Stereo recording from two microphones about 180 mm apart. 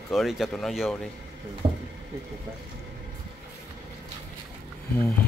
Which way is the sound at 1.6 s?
30° right (ahead or behind).